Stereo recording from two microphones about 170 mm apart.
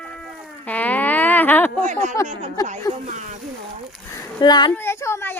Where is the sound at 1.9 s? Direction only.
45° right (ahead or behind).